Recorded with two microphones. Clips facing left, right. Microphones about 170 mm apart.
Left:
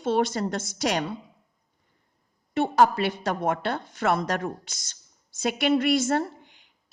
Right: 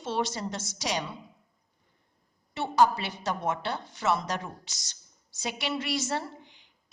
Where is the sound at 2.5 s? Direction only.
55° left (ahead or behind).